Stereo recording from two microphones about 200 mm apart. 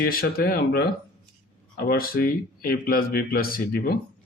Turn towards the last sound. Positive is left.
turn(degrees=50)  # may be behind; listen again after turning